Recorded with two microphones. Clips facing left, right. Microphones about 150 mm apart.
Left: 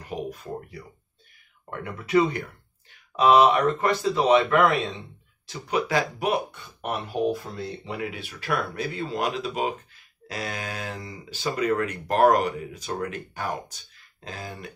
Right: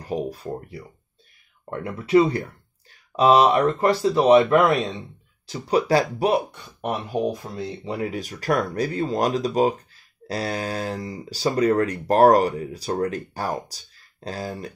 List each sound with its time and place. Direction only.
0.0 s a man's voice: 35° right (ahead or behind)
5.7 s speech: 35° right (ahead or behind)
7.1 s a man's voice: 20° right (ahead or behind)
7.8 s speech: 40° right (ahead or behind)